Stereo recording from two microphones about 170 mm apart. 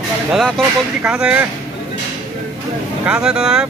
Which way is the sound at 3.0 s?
5° right (ahead or behind).